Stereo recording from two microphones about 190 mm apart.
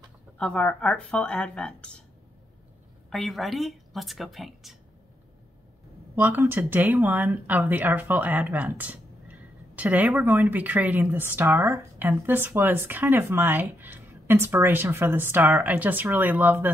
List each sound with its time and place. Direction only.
0.4 s speech: 5° left (ahead or behind)
3.1 s speech: centre (ahead or behind)
6.1 s speech: 10° right (ahead or behind)